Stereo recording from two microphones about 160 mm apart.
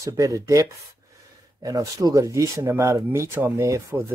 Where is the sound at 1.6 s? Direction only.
20° right (ahead or behind).